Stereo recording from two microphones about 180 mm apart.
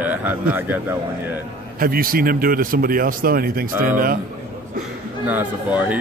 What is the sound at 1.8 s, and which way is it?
A man's voice, 55° right (ahead or behind).